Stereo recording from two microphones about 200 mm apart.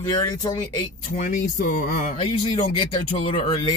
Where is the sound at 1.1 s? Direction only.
40° left (ahead or behind).